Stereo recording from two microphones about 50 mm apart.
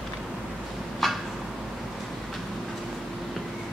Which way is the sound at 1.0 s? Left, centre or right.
Centre.